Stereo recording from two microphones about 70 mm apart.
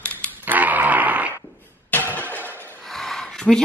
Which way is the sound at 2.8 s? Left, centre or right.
Centre.